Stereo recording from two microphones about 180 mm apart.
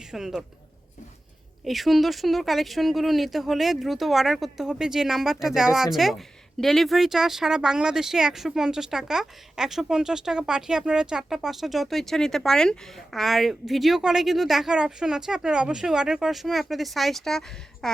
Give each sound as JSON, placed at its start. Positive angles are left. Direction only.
{"t": 0.1, "sound": "speech", "side_deg": -5}
{"t": 1.6, "sound": "a woman's voice", "side_deg": 0}